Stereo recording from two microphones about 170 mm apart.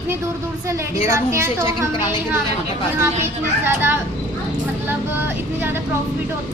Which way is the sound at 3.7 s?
15° right (ahead or behind).